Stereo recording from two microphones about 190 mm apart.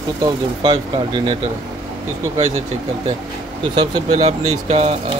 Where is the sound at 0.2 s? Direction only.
20° right (ahead or behind).